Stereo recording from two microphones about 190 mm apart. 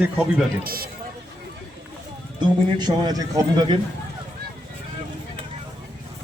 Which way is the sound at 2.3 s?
20° right (ahead or behind).